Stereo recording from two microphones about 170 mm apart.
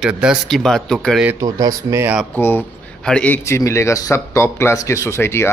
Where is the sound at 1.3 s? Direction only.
20° right (ahead or behind).